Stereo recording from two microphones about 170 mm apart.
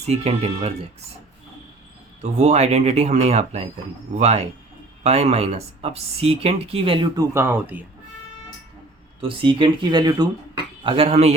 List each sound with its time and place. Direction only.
0.1 s speech: 40° right (ahead or behind)
2.4 s speech: 40° right (ahead or behind)
7.2 s speech: 15° right (ahead or behind)
9.2 s speech: 30° right (ahead or behind)
10.8 s speech: 35° right (ahead or behind)